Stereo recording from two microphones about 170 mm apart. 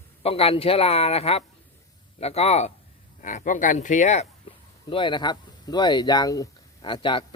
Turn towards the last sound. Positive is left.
turn(degrees=30)  # may be behind; listen again after turning